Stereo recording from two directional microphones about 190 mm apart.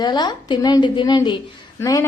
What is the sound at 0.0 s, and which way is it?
A woman's voice, 20° left (ahead or behind).